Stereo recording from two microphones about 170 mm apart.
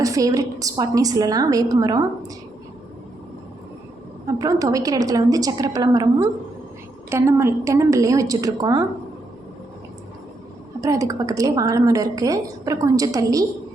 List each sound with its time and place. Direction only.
0.0 s a woman's voice: 20° right (ahead or behind)
4.4 s a woman's voice: 20° right (ahead or behind)
10.8 s a woman's voice: 20° right (ahead or behind)